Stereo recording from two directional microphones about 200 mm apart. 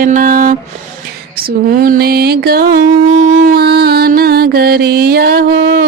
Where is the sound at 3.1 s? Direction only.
80° right.